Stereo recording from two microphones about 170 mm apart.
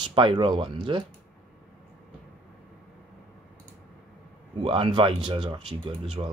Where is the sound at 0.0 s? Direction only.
30° right (ahead or behind).